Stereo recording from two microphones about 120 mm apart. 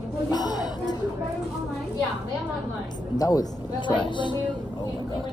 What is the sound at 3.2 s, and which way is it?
Speech, 35° left (ahead or behind).